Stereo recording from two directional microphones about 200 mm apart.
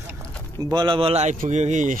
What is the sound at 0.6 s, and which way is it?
Speech, 20° right (ahead or behind).